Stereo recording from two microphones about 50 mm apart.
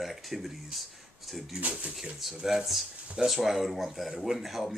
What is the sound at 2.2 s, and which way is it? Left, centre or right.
Speech, centre.